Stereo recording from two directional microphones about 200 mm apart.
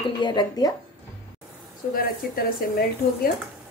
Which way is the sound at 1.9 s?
50° left (ahead or behind).